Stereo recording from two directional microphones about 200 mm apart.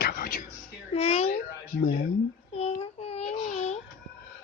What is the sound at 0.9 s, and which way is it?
Speech, 30° left (ahead or behind).